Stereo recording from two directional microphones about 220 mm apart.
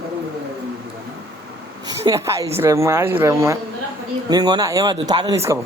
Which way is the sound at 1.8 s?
15° right (ahead or behind).